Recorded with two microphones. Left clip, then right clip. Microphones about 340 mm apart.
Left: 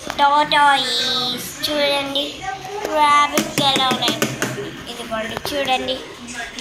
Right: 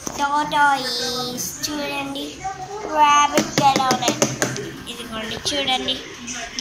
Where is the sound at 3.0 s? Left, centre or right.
Centre.